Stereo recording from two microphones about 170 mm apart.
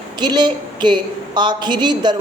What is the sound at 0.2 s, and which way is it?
Speech, 25° right (ahead or behind).